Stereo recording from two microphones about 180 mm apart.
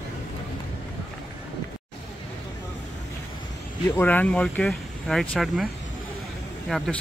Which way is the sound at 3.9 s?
10° left (ahead or behind).